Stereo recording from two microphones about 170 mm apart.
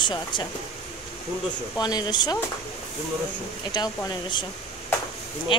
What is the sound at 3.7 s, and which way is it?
Speech, 25° left (ahead or behind).